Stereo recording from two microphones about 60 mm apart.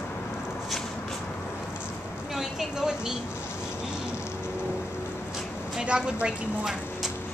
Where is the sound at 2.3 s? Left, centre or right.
Centre.